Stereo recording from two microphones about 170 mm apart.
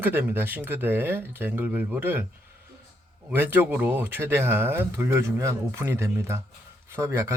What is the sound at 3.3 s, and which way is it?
Speech, 10° right (ahead or behind).